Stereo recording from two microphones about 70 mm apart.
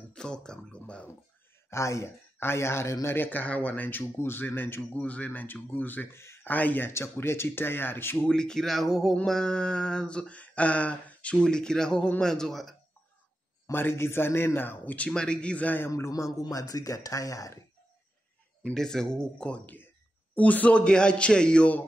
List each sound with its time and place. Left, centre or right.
0.1 s a sound: centre
1.7 s speech: left
3.2 s speech: left
4.0 s speech: left
6.4 s speech: left
6.9 s speech: left
8.3 s speech: centre
9.1 s a sound: centre
13.7 s speech: left
15.0 s a sound: centre
15.9 s speech: left
18.6 s a sound: centre